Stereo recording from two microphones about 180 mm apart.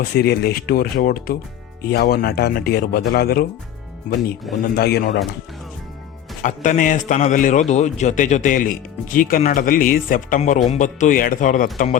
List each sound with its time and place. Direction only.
0.0 s speech: 60° left (ahead or behind)
4.7 s speech: 60° left (ahead or behind)
6.4 s a man's voice: 45° left (ahead or behind)